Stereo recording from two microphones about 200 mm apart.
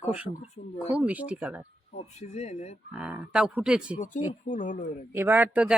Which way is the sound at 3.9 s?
40° left (ahead or behind).